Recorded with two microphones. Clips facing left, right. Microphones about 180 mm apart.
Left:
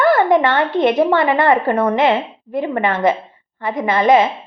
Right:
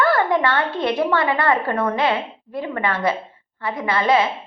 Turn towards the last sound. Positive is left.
turn(degrees=20)  # may be behind; listen again after turning